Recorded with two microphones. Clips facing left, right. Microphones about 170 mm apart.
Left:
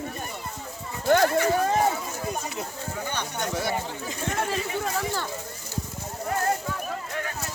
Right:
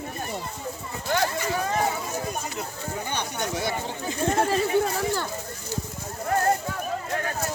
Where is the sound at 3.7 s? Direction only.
30° right (ahead or behind).